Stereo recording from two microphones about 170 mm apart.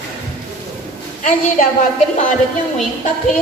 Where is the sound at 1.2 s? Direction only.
50° left (ahead or behind).